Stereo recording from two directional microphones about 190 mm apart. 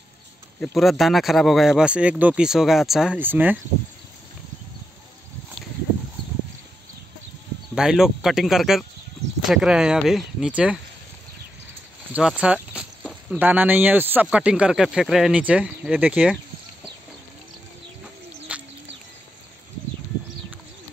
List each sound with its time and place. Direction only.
0.6 s speech: centre (ahead or behind)
7.7 s speech: centre (ahead or behind)
12.1 s speech: 5° right (ahead or behind)
18.5 s bird: 5° right (ahead or behind)